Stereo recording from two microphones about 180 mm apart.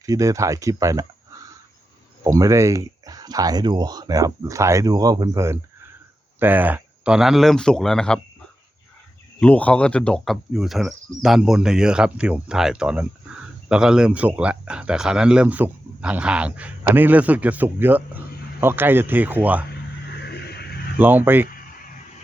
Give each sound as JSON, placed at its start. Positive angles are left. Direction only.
{"t": 0.0, "sound": "speech", "side_deg": -20}
{"t": 2.2, "sound": "speech", "side_deg": -20}
{"t": 9.4, "sound": "speech", "side_deg": 5}
{"t": 20.2, "sound": "a sound", "side_deg": 65}
{"t": 21.0, "sound": "speech", "side_deg": -10}